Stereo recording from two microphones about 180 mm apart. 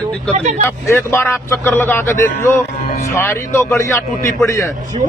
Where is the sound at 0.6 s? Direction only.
15° left (ahead or behind).